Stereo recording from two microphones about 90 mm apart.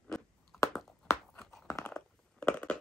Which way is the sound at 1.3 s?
5° left (ahead or behind).